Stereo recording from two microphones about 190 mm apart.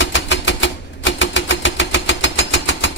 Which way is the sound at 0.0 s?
75° left (ahead or behind).